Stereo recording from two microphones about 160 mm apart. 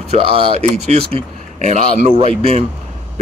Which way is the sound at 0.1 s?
40° right (ahead or behind).